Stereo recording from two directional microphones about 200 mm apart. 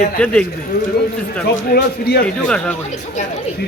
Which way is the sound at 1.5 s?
50° left (ahead or behind).